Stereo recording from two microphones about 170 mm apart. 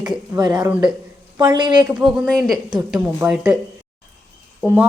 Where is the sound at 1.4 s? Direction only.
25° right (ahead or behind).